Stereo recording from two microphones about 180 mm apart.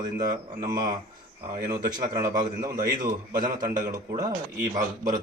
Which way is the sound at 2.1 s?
20° right (ahead or behind).